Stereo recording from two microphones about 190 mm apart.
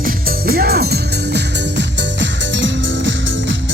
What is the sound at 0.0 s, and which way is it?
Music, 50° right (ahead or behind).